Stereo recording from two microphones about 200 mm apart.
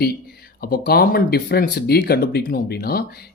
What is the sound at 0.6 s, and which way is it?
Speech, 50° left (ahead or behind).